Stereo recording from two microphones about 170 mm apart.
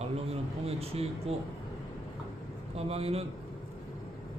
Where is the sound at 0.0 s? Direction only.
35° right (ahead or behind).